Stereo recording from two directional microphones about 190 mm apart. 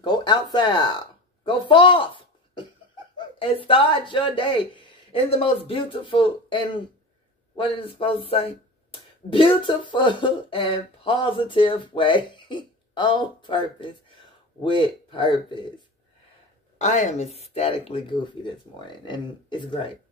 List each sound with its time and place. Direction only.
0.0 s a man's voice: 25° left (ahead or behind)
16.7 s speech: 40° left (ahead or behind)